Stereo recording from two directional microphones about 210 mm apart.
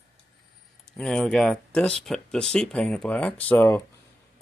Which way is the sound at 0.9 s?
5° left (ahead or behind).